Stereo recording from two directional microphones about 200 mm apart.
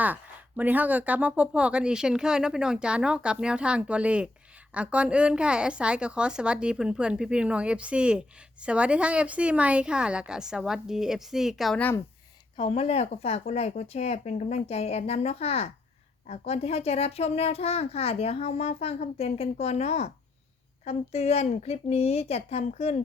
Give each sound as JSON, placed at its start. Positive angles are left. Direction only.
{"t": 0.0, "sound": "speech", "side_deg": -10}
{"t": 12.5, "sound": "a child's voice", "side_deg": 30}